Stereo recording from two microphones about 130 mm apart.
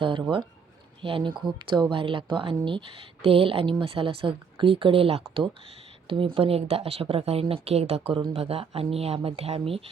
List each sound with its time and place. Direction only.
0.0 s speech: 40° right (ahead or behind)